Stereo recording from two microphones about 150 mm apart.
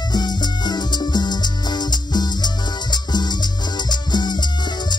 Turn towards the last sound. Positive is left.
turn(degrees=30)  # may be behind; listen again after turning